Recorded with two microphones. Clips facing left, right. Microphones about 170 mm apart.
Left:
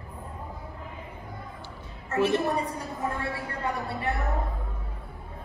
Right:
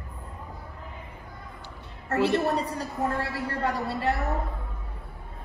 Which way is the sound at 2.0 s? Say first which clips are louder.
Right 1 dB; 70° right (ahead or behind).